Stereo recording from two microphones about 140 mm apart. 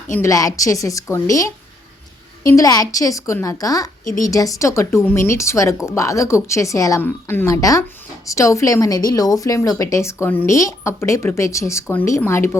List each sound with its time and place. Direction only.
0.1 s a woman's voice: 20° left (ahead or behind)